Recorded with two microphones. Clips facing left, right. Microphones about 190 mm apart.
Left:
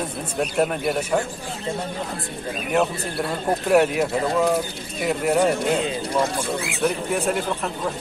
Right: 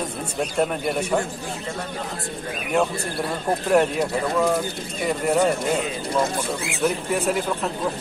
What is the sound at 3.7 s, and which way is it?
Speech, 5° left (ahead or behind).